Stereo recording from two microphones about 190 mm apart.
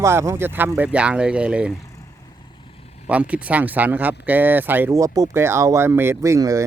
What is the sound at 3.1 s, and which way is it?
Speech, 5° right (ahead or behind).